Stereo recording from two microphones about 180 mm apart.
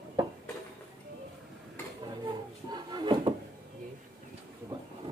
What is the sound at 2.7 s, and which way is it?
Drawer open or close, 25° right (ahead or behind).